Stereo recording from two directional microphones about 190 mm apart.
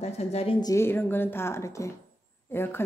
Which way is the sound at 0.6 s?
15° left (ahead or behind).